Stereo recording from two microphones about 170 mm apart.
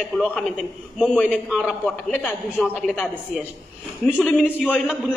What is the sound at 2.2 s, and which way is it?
A man's voice, 10° left (ahead or behind).